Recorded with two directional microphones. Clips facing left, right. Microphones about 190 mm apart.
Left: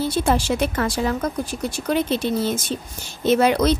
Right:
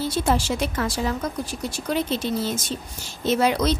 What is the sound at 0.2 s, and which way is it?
A woman's voice, 60° left (ahead or behind).